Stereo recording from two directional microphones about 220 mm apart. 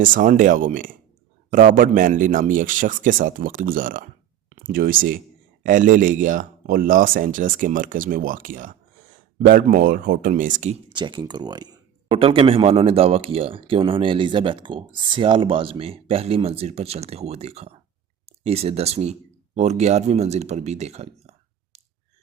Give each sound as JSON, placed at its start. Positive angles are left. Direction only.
{"t": 0.0, "sound": "speech", "side_deg": -35}